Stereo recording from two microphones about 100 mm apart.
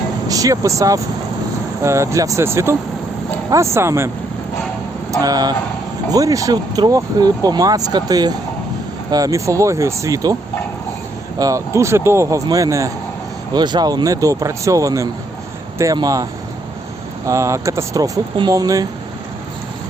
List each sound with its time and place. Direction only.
0.3 s speech: 35° right (ahead or behind)
5.2 s speech: 40° right (ahead or behind)
11.3 s speech: 35° right (ahead or behind)
13.5 s speech: 45° right (ahead or behind)
17.2 s speech: 30° right (ahead or behind)